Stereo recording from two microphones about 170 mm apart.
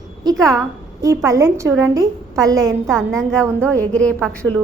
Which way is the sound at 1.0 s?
20° right (ahead or behind).